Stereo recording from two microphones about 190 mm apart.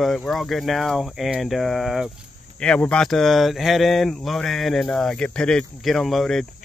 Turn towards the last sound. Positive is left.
turn(degrees=0)  # may be behind; listen again after turning